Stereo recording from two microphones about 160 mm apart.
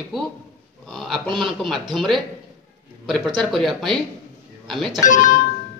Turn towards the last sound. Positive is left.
turn(degrees=55)  # may be behind; listen again after turning